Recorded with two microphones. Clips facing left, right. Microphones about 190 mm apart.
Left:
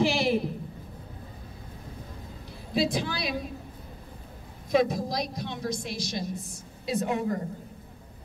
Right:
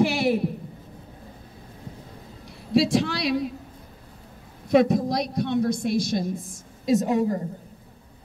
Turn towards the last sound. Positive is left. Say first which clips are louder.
# right 6 dB
turn(degrees=-35)  # may be behind; listen again after turning